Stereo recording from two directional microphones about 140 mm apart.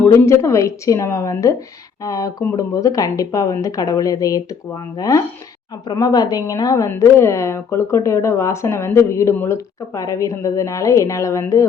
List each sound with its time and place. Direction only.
0.0 s a woman's voice: 20° left (ahead or behind)